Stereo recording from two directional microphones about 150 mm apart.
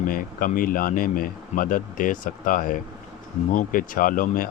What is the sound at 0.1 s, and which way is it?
Speech, 65° left (ahead or behind).